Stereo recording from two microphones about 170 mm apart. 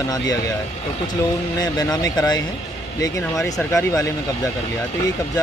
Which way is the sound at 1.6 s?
20° left (ahead or behind).